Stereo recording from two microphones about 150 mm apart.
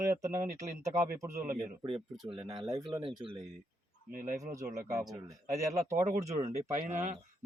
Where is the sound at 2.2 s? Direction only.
30° right (ahead or behind).